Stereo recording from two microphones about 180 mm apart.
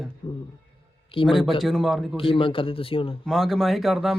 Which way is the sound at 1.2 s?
30° left (ahead or behind).